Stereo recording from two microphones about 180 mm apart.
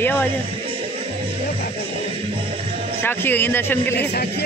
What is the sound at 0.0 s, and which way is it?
Music, 10° left (ahead or behind).